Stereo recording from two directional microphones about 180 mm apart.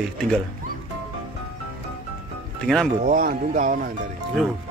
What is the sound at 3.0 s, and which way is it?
Speech, 45° right (ahead or behind).